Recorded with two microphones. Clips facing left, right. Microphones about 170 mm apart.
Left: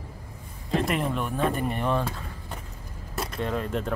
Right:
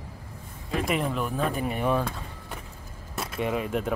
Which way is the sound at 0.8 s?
Centre (ahead or behind).